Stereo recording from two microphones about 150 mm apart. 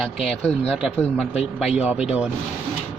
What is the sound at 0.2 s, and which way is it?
Speech, 45° left (ahead or behind).